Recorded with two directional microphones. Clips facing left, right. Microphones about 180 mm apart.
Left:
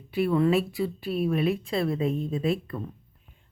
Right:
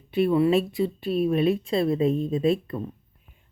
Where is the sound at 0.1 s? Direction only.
20° right (ahead or behind).